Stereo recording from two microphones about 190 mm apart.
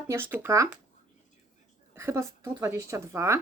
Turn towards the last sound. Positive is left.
turn(degrees=-15)  # may be behind; listen again after turning